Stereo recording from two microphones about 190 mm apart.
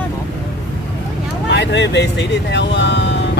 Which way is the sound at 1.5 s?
65° left (ahead or behind).